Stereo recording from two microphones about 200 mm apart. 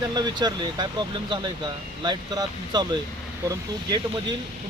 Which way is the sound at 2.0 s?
20° right (ahead or behind).